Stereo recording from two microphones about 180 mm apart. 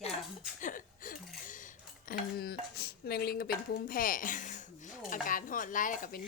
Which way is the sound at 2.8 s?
60° left (ahead or behind).